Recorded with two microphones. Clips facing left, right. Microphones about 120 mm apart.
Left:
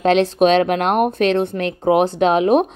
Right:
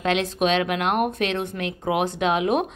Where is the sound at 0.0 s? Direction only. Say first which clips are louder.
Left 8 dB; 35° left (ahead or behind).